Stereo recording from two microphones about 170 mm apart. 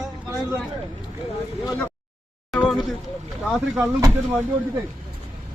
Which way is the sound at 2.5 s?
Centre (ahead or behind).